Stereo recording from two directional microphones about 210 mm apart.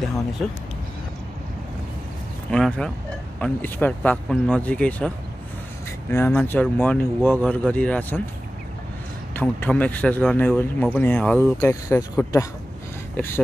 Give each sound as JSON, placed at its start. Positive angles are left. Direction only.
{"t": 0.4, "sound": "speech", "side_deg": 0}
{"t": 2.5, "sound": "speech", "side_deg": 5}
{"t": 9.3, "sound": "speech", "side_deg": 10}